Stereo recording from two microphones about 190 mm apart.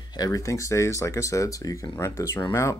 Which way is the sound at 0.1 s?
20° left (ahead or behind).